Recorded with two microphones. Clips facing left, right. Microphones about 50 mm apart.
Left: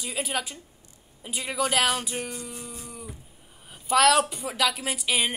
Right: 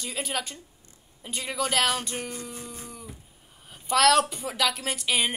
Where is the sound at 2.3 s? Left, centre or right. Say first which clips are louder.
Even; right.